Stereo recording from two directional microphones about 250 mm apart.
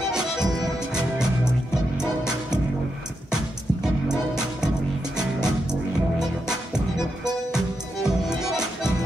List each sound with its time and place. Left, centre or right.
1.1 s music: centre
5.1 s music: centre
7.2 s music: centre